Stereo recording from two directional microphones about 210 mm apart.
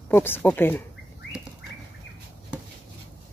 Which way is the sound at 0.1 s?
10° left (ahead or behind).